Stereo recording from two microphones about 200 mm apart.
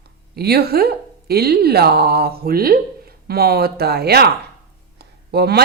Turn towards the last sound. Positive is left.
turn(degrees=-50)  # may be behind; listen again after turning